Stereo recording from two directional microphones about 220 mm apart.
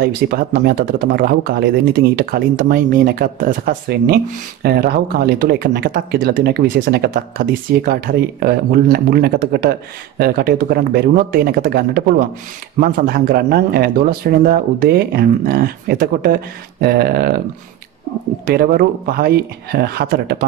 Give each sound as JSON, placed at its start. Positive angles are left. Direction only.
{"t": 0.0, "sound": "speech", "side_deg": -45}
{"t": 18.5, "sound": "speech", "side_deg": -45}